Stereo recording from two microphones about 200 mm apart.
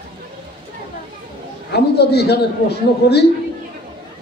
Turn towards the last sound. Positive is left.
turn(degrees=55)  # may be behind; listen again after turning